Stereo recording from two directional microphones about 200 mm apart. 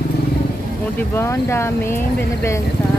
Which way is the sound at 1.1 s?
10° left (ahead or behind).